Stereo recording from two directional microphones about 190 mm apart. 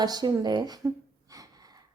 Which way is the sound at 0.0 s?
20° right (ahead or behind).